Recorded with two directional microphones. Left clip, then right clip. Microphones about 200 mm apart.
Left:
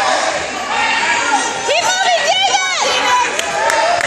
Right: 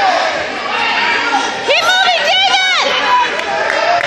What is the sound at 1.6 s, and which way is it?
Crowd, 25° right (ahead or behind).